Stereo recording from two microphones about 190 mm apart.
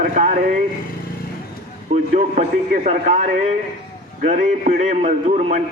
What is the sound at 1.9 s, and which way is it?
A man's voice, 40° right (ahead or behind).